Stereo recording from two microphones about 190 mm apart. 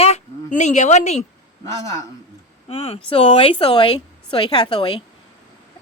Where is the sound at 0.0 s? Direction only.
35° left (ahead or behind).